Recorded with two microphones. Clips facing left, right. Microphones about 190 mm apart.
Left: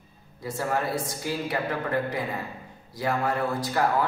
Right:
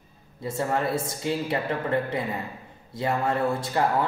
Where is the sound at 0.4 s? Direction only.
25° right (ahead or behind).